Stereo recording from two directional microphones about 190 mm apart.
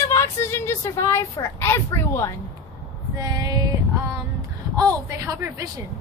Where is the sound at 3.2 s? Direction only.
20° right (ahead or behind).